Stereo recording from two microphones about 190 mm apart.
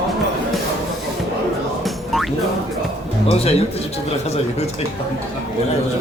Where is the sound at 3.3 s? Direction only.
30° left (ahead or behind).